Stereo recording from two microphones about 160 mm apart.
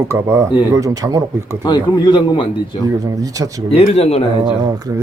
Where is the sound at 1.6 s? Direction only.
25° left (ahead or behind).